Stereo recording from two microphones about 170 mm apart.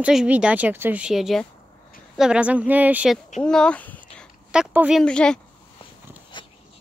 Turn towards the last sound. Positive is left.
turn(degrees=25)  # may be behind; listen again after turning